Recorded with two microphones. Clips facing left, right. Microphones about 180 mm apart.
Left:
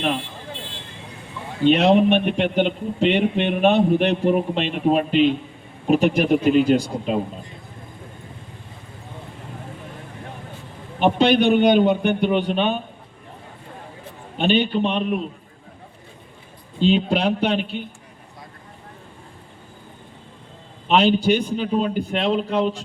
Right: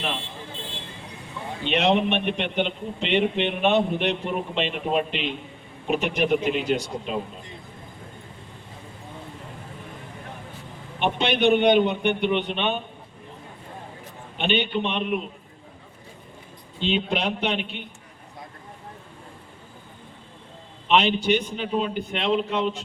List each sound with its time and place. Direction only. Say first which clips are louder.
1.6 s a man's voice: left 7 dB; 35° left (ahead or behind)
11.0 s a man's voice: left 5 dB; 35° left (ahead or behind)
14.3 s a man's voice: left 5 dB; 35° left (ahead or behind)
16.8 s a man's voice: left 6 dB; 40° left (ahead or behind)
20.8 s a man's voice: left 4 dB; 35° left (ahead or behind)